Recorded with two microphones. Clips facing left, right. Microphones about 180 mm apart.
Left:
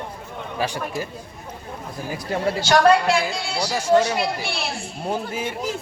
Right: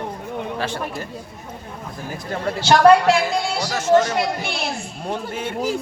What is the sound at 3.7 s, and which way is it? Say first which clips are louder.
A man's voice: right 1 dB; 10° left (ahead or behind).